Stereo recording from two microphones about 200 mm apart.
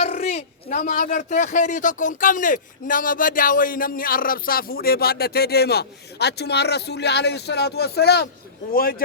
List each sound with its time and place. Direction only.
0.0 s speech: 35° left (ahead or behind)